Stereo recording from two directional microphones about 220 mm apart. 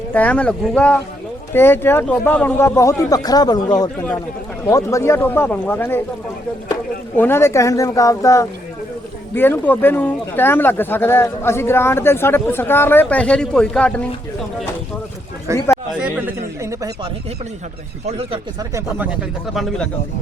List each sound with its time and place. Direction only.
0.1 s speech: 5° left (ahead or behind)
7.2 s speech: 10° left (ahead or behind)
15.7 s speech: 5° right (ahead or behind)
18.0 s speech: 25° right (ahead or behind)
18.7 s speech: 5° right (ahead or behind)